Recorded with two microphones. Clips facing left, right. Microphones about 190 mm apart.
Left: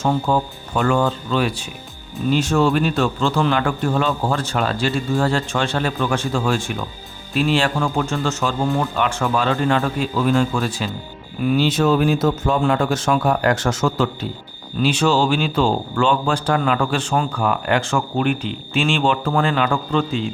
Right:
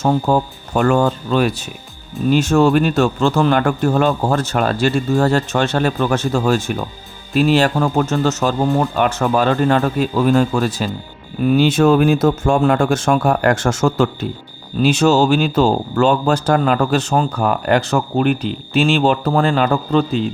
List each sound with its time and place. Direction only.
0.0 s a man's voice: 40° right (ahead or behind)